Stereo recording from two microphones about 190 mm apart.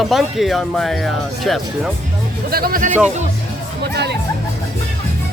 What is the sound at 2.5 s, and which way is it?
Speech, 55° right (ahead or behind).